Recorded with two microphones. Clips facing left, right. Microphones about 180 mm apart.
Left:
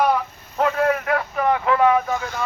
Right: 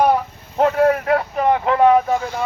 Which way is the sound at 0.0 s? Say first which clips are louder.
Right 3 dB; 30° right (ahead or behind).